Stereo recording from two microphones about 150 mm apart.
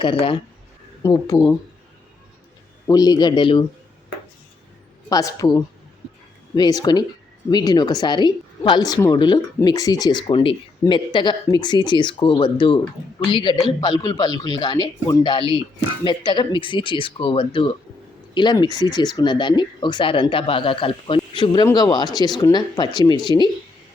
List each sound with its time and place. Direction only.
0.0 s speech: 35° left (ahead or behind)
1.0 s speech: 25° left (ahead or behind)
2.8 s speech: 25° left (ahead or behind)
5.0 s speech: 25° left (ahead or behind)